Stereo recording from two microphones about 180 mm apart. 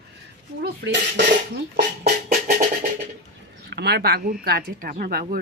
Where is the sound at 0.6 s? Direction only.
75° right (ahead or behind).